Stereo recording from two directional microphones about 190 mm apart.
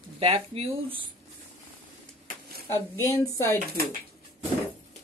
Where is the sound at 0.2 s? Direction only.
30° right (ahead or behind).